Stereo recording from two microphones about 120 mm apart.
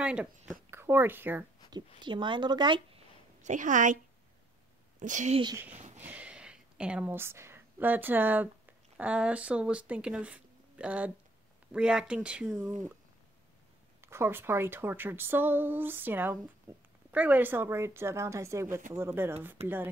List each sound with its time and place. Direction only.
0.0 s speech: 10° right (ahead or behind)
0.7 s speech: 20° right (ahead or behind)
2.0 s speech: 40° right (ahead or behind)
3.4 s a woman's voice: 90° right
5.0 s speech: 85° right
5.9 s speech: 15° right (ahead or behind)
14.0 s speech: 20° right (ahead or behind)
19.6 s speech: 60° right (ahead or behind)